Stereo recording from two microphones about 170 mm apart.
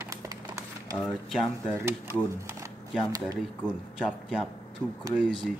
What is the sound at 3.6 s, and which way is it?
Speech, 5° right (ahead or behind).